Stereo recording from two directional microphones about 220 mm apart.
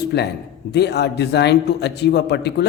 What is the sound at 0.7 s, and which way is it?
A man's voice, 50° left (ahead or behind).